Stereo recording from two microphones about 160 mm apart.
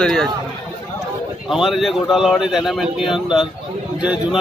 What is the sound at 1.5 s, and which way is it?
Speech, centre (ahead or behind).